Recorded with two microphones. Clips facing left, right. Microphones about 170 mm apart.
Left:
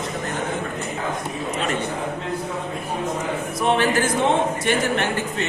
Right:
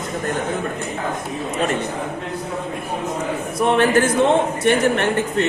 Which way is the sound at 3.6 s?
55° right (ahead or behind).